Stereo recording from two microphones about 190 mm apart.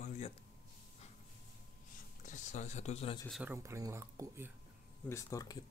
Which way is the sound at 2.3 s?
40° left (ahead or behind).